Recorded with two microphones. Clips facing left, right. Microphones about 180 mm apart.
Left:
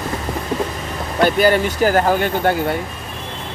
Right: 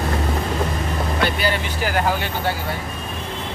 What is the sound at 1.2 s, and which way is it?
Vehicle, 45° left (ahead or behind).